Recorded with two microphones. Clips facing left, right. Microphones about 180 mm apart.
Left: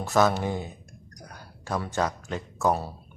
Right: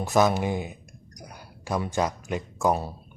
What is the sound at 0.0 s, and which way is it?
Speech, 15° right (ahead or behind).